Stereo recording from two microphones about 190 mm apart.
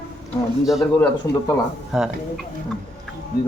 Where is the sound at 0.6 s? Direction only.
Centre (ahead or behind).